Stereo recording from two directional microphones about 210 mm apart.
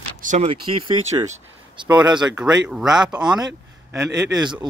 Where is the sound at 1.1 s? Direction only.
20° right (ahead or behind).